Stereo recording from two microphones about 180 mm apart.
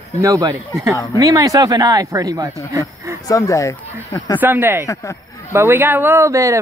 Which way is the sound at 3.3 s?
20° left (ahead or behind).